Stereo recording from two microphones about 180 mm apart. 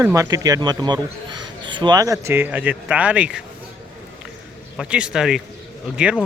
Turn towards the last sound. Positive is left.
turn(degrees=-5)  # may be behind; listen again after turning